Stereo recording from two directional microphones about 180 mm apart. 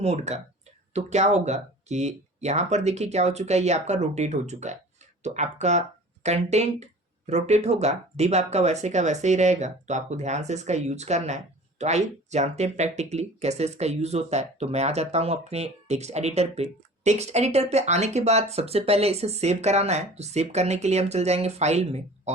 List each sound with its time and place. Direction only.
0.0 s speech: 35° right (ahead or behind)